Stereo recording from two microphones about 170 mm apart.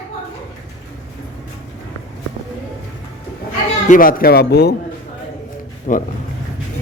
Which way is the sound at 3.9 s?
55° left (ahead or behind).